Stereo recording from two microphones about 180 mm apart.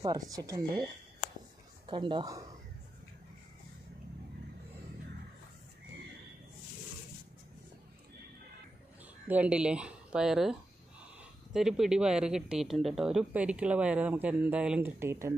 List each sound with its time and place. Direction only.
0.0 s speech: 20° right (ahead or behind)
1.9 s speech: 25° right (ahead or behind)
9.3 s speech: 5° right (ahead or behind)
11.5 s speech: centre (ahead or behind)